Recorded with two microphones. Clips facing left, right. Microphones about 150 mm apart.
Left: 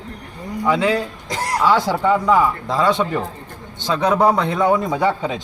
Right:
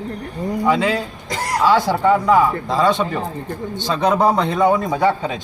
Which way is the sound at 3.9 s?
15° right (ahead or behind).